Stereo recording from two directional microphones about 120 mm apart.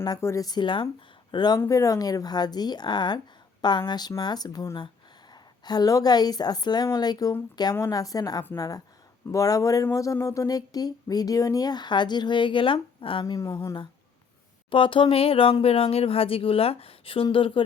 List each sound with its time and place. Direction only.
0.2 s speech: 25° left (ahead or behind); by 13.3 s 45° left (ahead or behind)
13.5 s speech: 20° left (ahead or behind)
14.7 s speech: 45° left (ahead or behind)